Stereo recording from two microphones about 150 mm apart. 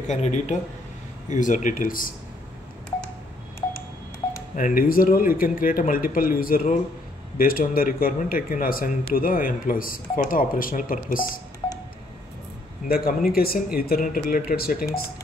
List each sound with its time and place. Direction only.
0.1 s speech: 50° left (ahead or behind); by 2.1 s 70° left (ahead or behind)
4.6 s speech: 65° left (ahead or behind)
12.8 s speech: 90° left